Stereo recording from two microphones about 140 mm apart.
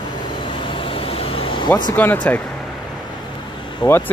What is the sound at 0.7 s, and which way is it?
Vehicle, 40° left (ahead or behind).